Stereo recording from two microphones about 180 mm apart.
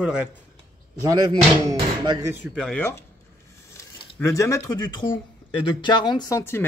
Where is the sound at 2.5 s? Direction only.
5° left (ahead or behind).